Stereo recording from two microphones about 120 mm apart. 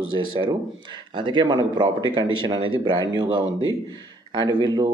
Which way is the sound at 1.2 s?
40° right (ahead or behind).